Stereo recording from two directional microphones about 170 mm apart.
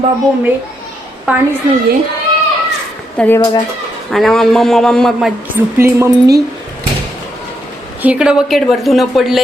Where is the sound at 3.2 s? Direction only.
10° left (ahead or behind).